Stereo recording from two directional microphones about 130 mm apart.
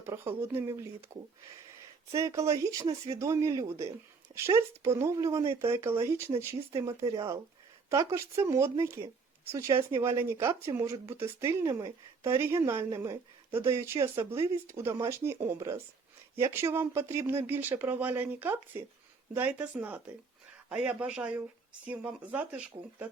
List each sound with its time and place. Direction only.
0.0 s speech: 20° right (ahead or behind)